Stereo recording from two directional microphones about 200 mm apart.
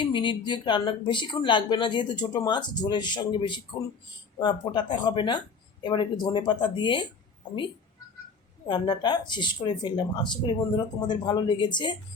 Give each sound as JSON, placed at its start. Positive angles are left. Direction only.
{"t": 0.0, "sound": "speech", "side_deg": 25}
{"t": 8.6, "sound": "speech", "side_deg": 25}